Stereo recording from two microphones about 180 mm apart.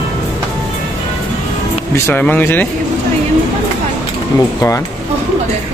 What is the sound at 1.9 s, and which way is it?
Speech, 10° left (ahead or behind).